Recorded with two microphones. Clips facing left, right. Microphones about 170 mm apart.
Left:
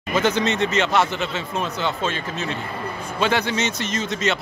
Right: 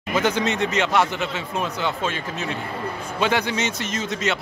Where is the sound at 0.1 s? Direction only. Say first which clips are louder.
Left 1 dB; 10° right (ahead or behind).